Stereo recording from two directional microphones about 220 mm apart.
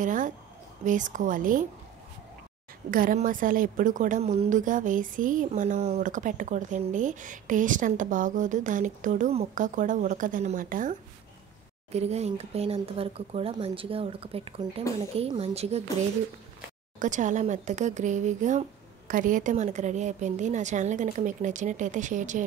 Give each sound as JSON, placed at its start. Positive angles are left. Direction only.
{"t": 0.0, "sound": "a woman's voice", "side_deg": -35}
{"t": 2.9, "sound": "a woman's voice", "side_deg": -40}
{"t": 17.0, "sound": "a woman's voice", "side_deg": -35}